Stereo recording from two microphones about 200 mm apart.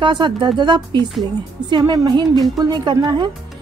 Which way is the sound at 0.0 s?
25° right (ahead or behind).